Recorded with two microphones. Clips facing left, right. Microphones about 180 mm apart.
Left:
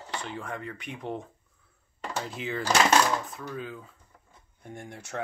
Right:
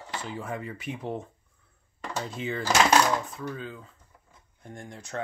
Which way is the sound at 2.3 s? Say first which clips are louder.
Right 1 dB; centre (ahead or behind).